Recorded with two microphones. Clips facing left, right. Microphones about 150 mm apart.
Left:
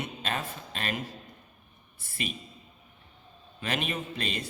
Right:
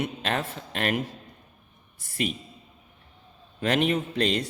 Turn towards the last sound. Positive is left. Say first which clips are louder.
# right 9 dB
turn(degrees=-70)  # may be behind; listen again after turning